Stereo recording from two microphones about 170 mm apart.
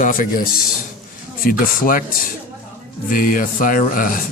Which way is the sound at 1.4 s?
55° left (ahead or behind).